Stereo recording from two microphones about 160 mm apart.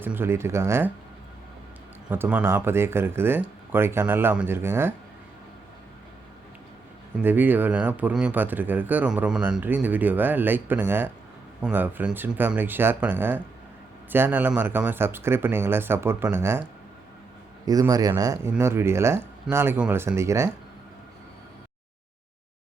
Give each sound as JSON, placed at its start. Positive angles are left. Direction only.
{"t": 0.0, "sound": "speech", "side_deg": -15}
{"t": 2.0, "sound": "speech", "side_deg": -10}
{"t": 7.2, "sound": "speech", "side_deg": -10}
{"t": 17.7, "sound": "speech", "side_deg": -20}